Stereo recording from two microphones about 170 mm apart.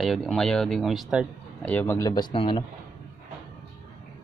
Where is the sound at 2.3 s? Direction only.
30° left (ahead or behind).